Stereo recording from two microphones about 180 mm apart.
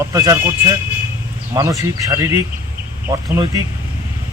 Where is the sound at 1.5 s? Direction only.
15° right (ahead or behind).